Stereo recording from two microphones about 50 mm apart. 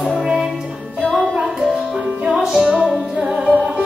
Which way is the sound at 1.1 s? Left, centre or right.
Centre.